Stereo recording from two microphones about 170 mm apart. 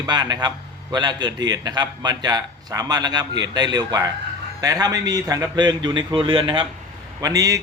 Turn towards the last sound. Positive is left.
turn(degrees=-20)  # may be behind; listen again after turning